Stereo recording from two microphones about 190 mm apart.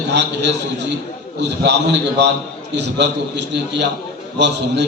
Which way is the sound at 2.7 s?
65° right (ahead or behind).